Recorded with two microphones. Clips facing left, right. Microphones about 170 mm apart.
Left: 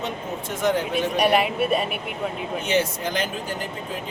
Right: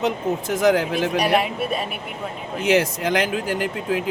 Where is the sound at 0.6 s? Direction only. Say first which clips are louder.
Right 4 dB; 90° right.